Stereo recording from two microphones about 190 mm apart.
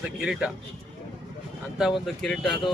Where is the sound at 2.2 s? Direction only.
Centre (ahead or behind).